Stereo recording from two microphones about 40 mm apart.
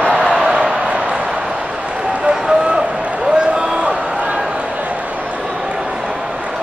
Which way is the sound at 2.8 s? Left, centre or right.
Right.